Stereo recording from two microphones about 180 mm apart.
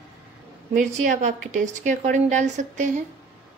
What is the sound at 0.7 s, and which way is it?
A woman's voice, 45° right (ahead or behind).